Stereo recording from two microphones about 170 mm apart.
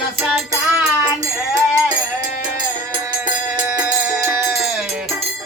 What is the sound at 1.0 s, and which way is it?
Music, 20° right (ahead or behind).